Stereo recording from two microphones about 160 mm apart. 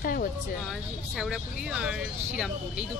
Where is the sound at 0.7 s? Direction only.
5° right (ahead or behind).